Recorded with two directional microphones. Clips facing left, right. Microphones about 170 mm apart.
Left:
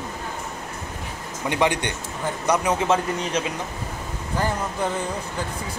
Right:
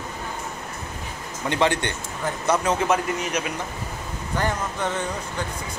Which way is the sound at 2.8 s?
25° left (ahead or behind).